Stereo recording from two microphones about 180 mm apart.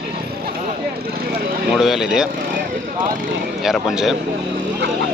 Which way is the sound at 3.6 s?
Centre (ahead or behind).